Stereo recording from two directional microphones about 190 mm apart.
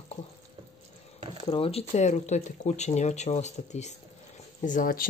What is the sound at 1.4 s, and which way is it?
Speech, 30° left (ahead or behind).